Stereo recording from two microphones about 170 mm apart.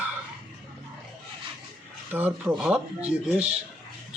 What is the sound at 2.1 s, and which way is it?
Speech, 10° right (ahead or behind).